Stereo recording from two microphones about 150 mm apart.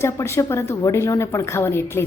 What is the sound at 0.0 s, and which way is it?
A woman's voice, 20° left (ahead or behind).